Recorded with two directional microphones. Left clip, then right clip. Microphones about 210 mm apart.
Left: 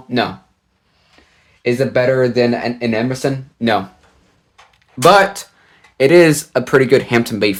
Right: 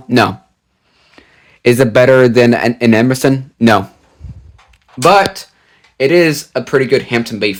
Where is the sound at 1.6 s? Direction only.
50° right (ahead or behind).